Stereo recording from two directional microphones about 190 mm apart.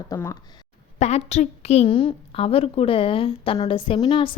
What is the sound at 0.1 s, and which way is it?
Speech, 15° left (ahead or behind).